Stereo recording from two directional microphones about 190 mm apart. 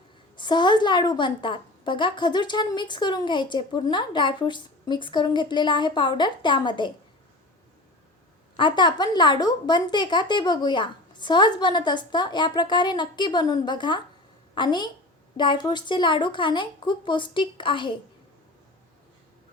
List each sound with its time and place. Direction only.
0.3 s a woman's voice: 25° left (ahead or behind)
8.5 s a woman's voice: 25° left (ahead or behind)